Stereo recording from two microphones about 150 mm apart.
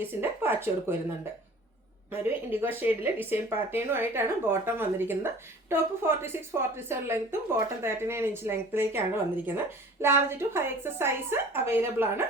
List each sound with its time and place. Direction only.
0.0 s speech: 15° right (ahead or behind)
2.2 s speech: 15° right (ahead or behind)